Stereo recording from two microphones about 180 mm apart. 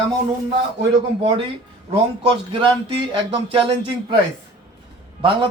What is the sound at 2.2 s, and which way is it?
Speech, 30° right (ahead or behind).